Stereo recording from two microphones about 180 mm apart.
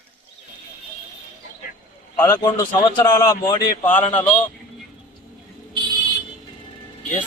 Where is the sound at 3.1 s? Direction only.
15° left (ahead or behind).